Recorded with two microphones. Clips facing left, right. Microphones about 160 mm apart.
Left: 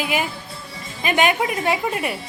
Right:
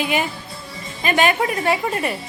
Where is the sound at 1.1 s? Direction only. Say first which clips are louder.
Right 1 dB; 15° left (ahead or behind).